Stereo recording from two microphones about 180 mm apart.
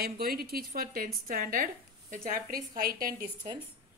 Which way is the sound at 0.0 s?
55° right (ahead or behind).